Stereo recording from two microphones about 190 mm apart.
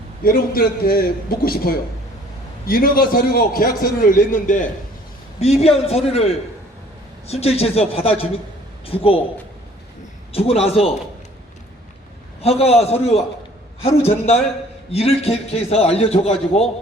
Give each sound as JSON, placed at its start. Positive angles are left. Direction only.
{"t": 0.3, "sound": "a man's voice", "side_deg": 50}
{"t": 5.4, "sound": "a man's voice", "side_deg": 30}
{"t": 10.3, "sound": "a man's voice", "side_deg": 30}
{"t": 12.4, "sound": "a man's voice", "side_deg": 30}